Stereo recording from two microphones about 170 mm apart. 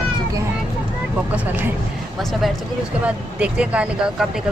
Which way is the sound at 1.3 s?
10° right (ahead or behind).